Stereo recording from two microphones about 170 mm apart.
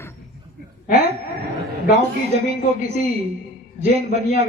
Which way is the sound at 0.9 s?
40° right (ahead or behind).